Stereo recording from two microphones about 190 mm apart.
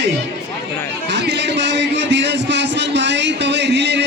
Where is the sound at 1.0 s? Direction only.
65° right (ahead or behind).